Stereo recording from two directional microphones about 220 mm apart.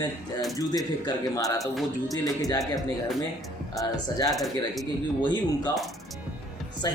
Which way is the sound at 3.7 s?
15° left (ahead or behind).